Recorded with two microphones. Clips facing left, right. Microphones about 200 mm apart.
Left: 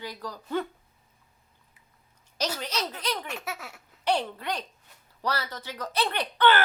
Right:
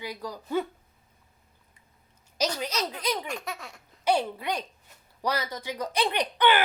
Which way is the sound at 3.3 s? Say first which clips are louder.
Right 1 dB; 5° left (ahead or behind).